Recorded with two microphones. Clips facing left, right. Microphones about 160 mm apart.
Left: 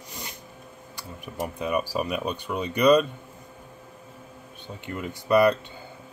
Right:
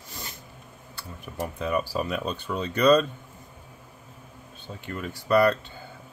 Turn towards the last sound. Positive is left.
turn(degrees=20)  # may be behind; listen again after turning